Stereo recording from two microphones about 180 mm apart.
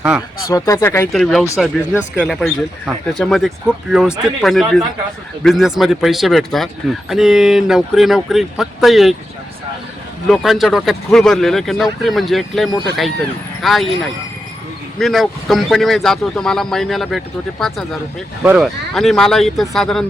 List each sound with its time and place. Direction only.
0.4 s speech: 20° left (ahead or behind)
1.1 s speech: centre (ahead or behind)
10.2 s speech: centre (ahead or behind)